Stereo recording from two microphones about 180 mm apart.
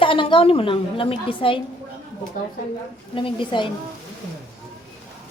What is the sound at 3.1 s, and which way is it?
Speech, 25° left (ahead or behind).